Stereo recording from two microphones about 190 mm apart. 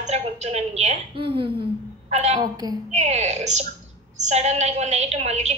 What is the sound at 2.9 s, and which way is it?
A woman's voice, 35° right (ahead or behind).